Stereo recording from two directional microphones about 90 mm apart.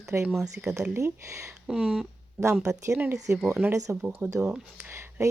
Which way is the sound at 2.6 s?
35° right (ahead or behind).